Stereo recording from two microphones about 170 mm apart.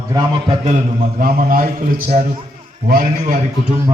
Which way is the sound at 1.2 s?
60° right (ahead or behind).